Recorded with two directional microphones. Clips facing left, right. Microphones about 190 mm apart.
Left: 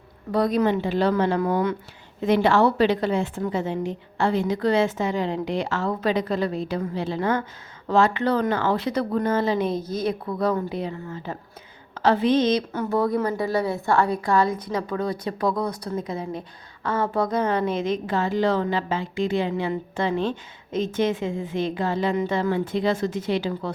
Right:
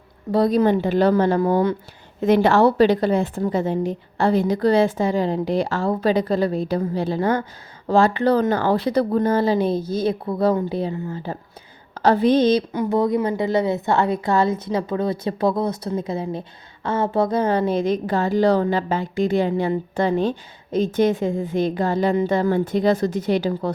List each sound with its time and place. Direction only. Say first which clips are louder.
0.3 s a woman's voice: right 4 dB; 30° right (ahead or behind)
2.2 s a woman's voice: right 3 dB; 45° right (ahead or behind)
12.7 s a woman's voice: right 3 dB; 15° right (ahead or behind); by 23.7 s 40° right (ahead or behind)